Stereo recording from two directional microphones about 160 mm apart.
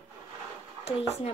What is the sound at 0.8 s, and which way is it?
Speech, 40° left (ahead or behind).